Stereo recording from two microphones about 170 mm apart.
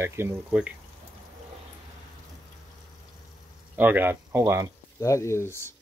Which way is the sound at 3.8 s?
10° right (ahead or behind).